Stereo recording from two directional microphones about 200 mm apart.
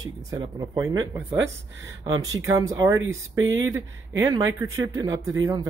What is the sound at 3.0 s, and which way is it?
Speech, 80° right.